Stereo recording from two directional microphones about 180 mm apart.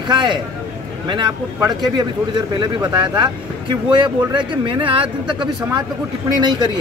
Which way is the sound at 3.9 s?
25° right (ahead or behind).